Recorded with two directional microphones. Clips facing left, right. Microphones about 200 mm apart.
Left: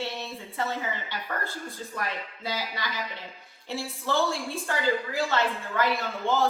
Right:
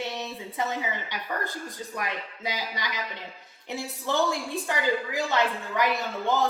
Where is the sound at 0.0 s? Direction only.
15° right (ahead or behind).